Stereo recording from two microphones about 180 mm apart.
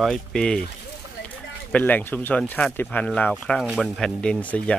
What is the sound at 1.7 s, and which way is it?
Speech, 10° left (ahead or behind).